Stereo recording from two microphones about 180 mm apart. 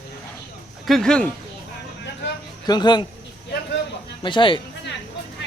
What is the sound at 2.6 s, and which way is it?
Speech, 25° left (ahead or behind).